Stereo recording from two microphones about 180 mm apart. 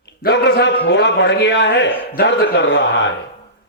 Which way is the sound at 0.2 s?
65° left (ahead or behind).